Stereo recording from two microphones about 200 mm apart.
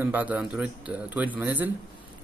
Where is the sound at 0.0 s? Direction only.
10° right (ahead or behind).